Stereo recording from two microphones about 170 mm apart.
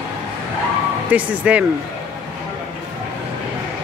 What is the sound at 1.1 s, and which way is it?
Speech, 10° right (ahead or behind).